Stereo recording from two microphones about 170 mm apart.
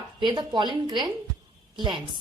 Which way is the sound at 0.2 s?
25° right (ahead or behind).